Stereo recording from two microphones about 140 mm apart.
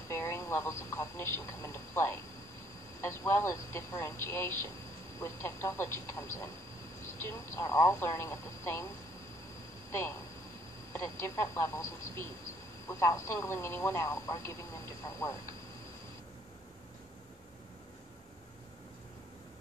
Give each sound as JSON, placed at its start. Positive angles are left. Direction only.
{"t": 0.1, "sound": "speech", "side_deg": 20}